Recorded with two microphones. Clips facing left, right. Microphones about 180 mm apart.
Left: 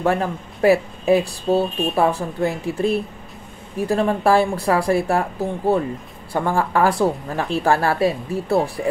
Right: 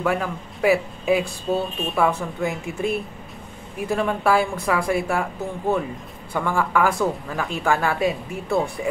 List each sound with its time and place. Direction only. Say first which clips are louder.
0.0 s speech: left 3 dB; 40° left (ahead or behind)